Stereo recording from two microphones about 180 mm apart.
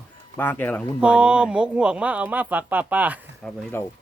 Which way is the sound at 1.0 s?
5° right (ahead or behind).